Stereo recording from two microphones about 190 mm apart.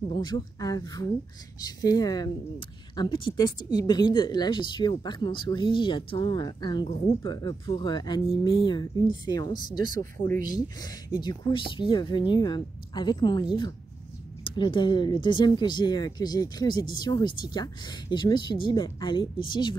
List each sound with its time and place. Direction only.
0.1 s speech: 20° left (ahead or behind)
11.1 s speech: 25° left (ahead or behind)